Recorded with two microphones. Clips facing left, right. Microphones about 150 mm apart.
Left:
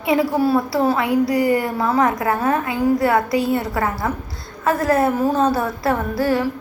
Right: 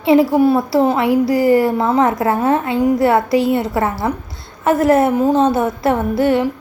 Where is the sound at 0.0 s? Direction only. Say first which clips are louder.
Right 6 dB; 25° right (ahead or behind).